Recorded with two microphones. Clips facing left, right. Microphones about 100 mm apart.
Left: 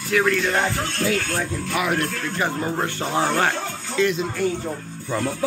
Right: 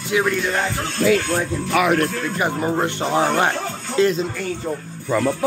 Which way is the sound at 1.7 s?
90° right.